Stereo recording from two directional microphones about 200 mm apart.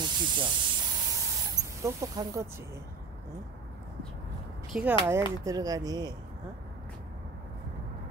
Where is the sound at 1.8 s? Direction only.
15° right (ahead or behind).